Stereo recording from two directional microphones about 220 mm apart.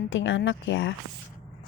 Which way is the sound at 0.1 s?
60° left (ahead or behind).